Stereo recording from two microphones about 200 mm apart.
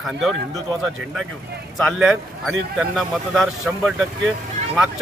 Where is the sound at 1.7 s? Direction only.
Centre (ahead or behind).